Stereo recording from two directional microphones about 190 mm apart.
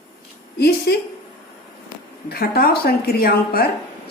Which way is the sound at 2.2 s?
55° left (ahead or behind).